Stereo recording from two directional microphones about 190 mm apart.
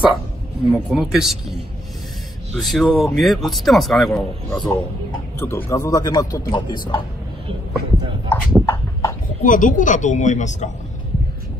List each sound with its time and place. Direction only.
0.7 s a man's voice: centre (ahead or behind)
5.4 s a man's voice: 10° left (ahead or behind)
8.3 s clip-clop: 10° left (ahead or behind)
9.4 s a man's voice: 45° left (ahead or behind)